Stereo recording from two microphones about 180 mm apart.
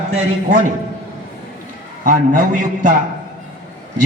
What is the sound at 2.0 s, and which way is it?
Speech, 45° right (ahead or behind).